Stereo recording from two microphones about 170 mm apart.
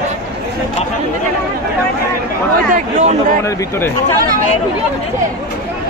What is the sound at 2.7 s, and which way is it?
Speech, 45° right (ahead or behind).